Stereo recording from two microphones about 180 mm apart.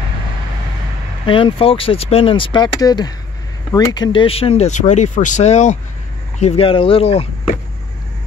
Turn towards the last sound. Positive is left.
turn(degrees=35)  # may be behind; listen again after turning